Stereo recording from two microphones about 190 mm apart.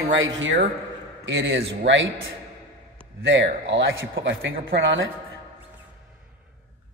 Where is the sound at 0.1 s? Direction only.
90° right.